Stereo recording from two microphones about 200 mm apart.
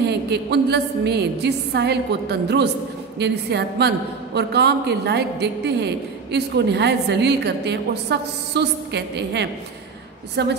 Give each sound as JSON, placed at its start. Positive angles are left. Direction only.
{"t": 0.0, "sound": "a woman's voice", "side_deg": -55}